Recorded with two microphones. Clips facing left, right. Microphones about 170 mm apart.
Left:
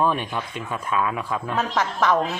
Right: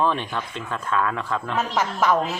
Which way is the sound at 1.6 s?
5° right (ahead or behind).